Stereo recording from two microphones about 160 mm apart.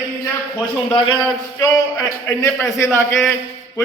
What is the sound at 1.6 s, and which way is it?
A man's voice, 20° left (ahead or behind).